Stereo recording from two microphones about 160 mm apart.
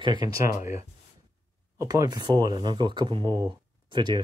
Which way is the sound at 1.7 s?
20° right (ahead or behind).